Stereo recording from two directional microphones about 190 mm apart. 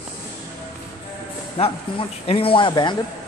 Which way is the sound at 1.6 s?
30° left (ahead or behind).